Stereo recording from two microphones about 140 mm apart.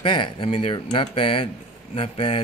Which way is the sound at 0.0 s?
35° left (ahead or behind).